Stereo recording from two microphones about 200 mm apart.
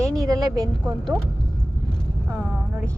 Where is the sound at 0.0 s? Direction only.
15° right (ahead or behind).